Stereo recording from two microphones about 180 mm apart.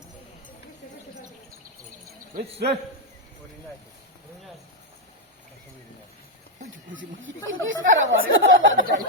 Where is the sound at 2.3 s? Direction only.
60° right (ahead or behind).